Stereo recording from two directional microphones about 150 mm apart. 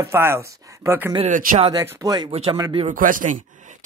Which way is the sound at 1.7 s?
25° right (ahead or behind).